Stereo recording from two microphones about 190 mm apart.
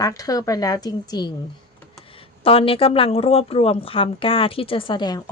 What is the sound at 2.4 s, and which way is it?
A woman's voice, 30° left (ahead or behind).